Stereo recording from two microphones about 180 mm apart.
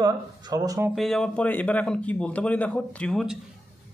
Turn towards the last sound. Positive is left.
turn(degrees=0)  # may be behind; listen again after turning